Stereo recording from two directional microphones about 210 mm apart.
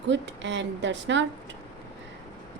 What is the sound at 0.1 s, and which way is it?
A woman's voice, 60° right (ahead or behind).